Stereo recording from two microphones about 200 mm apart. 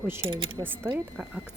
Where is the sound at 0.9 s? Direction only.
10° right (ahead or behind).